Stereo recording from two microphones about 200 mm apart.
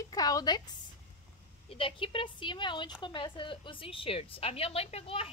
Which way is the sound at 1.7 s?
25° left (ahead or behind).